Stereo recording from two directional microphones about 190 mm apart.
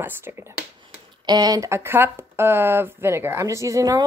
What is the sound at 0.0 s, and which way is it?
A woman's voice, 10° right (ahead or behind).